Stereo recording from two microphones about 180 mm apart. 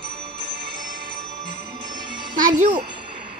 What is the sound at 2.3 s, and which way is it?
Music, 50° right (ahead or behind).